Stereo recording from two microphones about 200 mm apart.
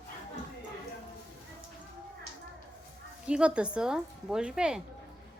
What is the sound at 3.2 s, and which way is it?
Speech, 5° right (ahead or behind).